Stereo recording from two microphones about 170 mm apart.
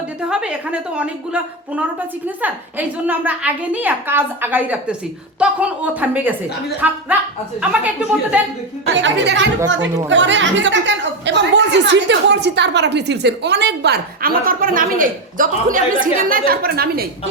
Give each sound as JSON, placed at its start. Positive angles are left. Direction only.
{"t": 0.3, "sound": "a woman's voice", "side_deg": -5}
{"t": 8.9, "sound": "a woman's voice", "side_deg": -90}